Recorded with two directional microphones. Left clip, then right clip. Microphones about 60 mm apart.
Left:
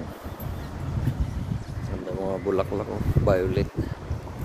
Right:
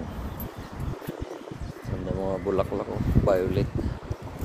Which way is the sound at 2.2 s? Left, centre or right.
Left.